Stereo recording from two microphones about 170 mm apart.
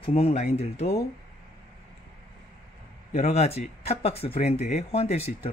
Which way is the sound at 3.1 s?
40° left (ahead or behind).